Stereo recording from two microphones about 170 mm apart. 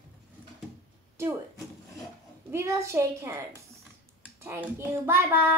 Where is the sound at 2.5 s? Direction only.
15° right (ahead or behind).